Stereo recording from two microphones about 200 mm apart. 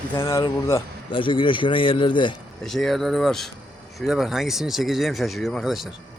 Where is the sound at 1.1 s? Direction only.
25° left (ahead or behind).